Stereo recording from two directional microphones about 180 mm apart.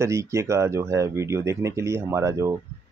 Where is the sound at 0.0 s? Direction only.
15° right (ahead or behind).